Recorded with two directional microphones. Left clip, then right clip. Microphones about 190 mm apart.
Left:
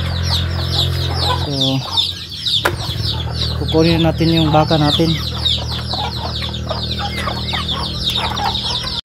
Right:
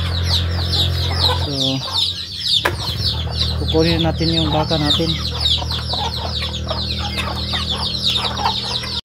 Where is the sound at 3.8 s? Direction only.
25° left (ahead or behind).